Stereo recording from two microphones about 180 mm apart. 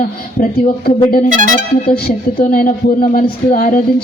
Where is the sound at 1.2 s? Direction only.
45° right (ahead or behind).